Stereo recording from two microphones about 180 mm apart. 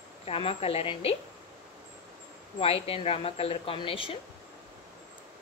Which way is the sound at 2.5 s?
30° left (ahead or behind).